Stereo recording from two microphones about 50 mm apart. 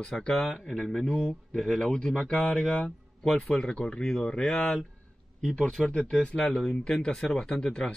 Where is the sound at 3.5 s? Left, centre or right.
Centre.